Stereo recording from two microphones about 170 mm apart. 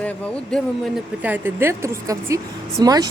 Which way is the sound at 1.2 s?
10° right (ahead or behind).